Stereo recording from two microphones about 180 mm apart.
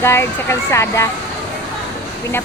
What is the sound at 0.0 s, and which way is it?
Speech, 15° left (ahead or behind).